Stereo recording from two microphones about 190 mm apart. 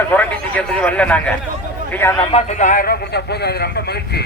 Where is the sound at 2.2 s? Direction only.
30° left (ahead or behind); by 4.2 s 55° left (ahead or behind).